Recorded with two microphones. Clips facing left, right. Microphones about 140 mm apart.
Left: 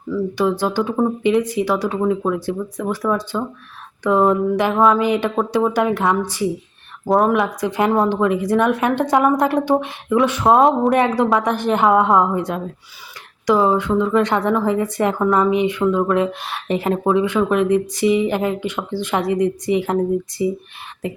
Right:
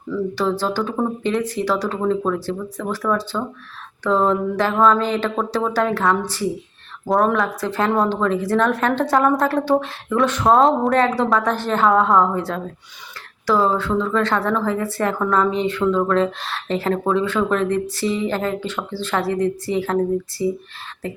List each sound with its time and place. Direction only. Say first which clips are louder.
0.1 s a woman's voice: left 2 dB; 15° left (ahead or behind)
7.1 s speech: left 2 dB; centre (ahead or behind)
7.3 s a woman's voice: left 2 dB; 15° left (ahead or behind)
10.5 s speech: left 1 dB; centre (ahead or behind)
10.9 s a woman's voice: left 1 dB; 15° left (ahead or behind)